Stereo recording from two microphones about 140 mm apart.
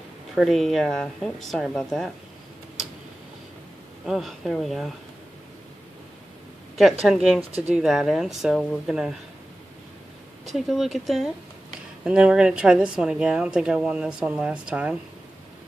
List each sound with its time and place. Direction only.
0.4 s a woman's voice: 5° left (ahead or behind)
4.0 s a woman's voice: centre (ahead or behind)
6.8 s a woman's voice: centre (ahead or behind)
10.5 s a woman's voice: centre (ahead or behind)